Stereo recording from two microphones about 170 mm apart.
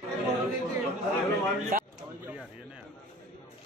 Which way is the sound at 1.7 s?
50° right (ahead or behind).